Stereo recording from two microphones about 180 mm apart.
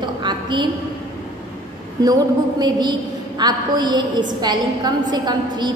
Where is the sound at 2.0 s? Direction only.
20° right (ahead or behind).